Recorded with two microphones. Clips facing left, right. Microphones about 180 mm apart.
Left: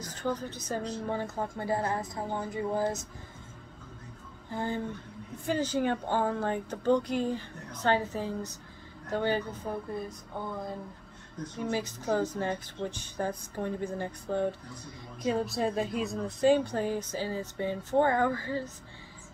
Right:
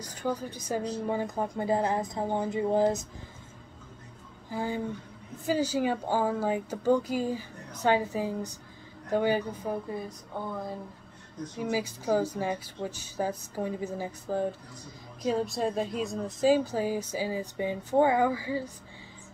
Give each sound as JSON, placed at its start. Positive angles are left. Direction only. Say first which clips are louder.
{"t": 0.0, "sound": "speech", "louder": "right 1 dB", "side_deg": -10}
{"t": 4.5, "sound": "speech", "louder": "right 1 dB", "side_deg": -10}
{"t": 11.5, "sound": "speech", "louder": "right 2 dB", "side_deg": -10}